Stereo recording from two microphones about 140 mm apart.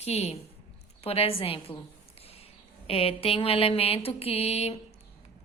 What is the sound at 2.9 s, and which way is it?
A woman's voice, 45° left (ahead or behind).